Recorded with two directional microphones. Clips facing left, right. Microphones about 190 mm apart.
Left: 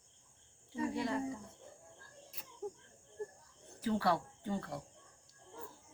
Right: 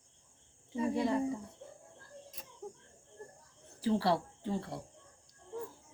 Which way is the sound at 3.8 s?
30° right (ahead or behind).